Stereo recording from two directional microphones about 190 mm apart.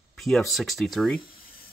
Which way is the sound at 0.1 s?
Centre (ahead or behind).